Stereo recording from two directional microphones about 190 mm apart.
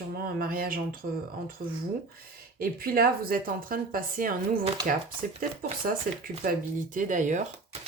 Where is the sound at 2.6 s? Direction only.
50° right (ahead or behind).